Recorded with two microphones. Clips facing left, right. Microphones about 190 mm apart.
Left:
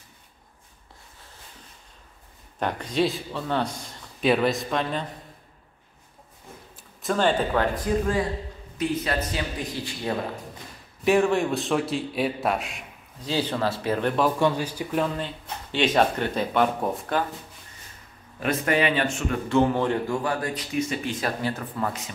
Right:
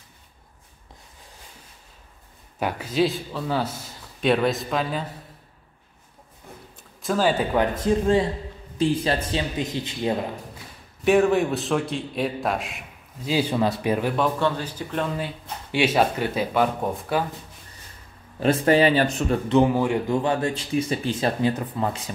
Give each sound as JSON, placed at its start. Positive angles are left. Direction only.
{"t": 2.6, "sound": "a man's voice", "side_deg": -5}
{"t": 7.0, "sound": "a man's voice", "side_deg": -5}
{"t": 7.6, "sound": "a man's voice", "side_deg": -25}
{"t": 11.1, "sound": "a man's voice", "side_deg": 0}
{"t": 13.2, "sound": "speech", "side_deg": -10}
{"t": 14.4, "sound": "speech", "side_deg": 10}
{"t": 15.1, "sound": "speech", "side_deg": -10}
{"t": 18.4, "sound": "speech", "side_deg": -30}
{"t": 19.5, "sound": "speech", "side_deg": -10}
{"t": 20.1, "sound": "a man's voice", "side_deg": -25}
{"t": 21.4, "sound": "a man's voice", "side_deg": -20}